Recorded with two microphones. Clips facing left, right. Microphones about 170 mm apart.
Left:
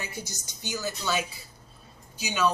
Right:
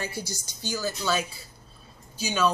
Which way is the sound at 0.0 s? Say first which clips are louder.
Right 4 dB; 35° right (ahead or behind).